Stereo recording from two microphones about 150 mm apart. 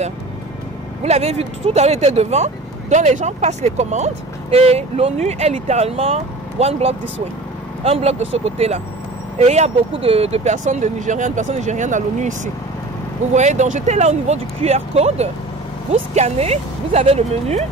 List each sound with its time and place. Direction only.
1.0 s speech: 45° right (ahead or behind)